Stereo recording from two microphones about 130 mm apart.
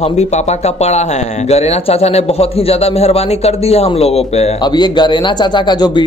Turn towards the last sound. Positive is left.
turn(degrees=35)  # may be behind; listen again after turning